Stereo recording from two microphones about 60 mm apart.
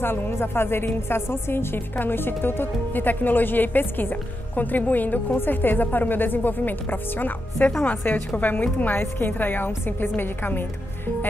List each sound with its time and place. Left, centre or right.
0.0 s a woman's voice: left